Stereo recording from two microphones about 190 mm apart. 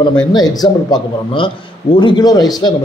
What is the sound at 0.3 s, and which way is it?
A man's voice, 20° left (ahead or behind).